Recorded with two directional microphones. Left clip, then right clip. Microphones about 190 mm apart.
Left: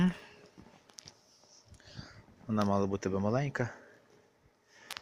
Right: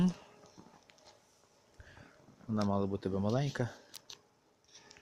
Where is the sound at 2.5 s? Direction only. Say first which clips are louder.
Left 4 dB; centre (ahead or behind).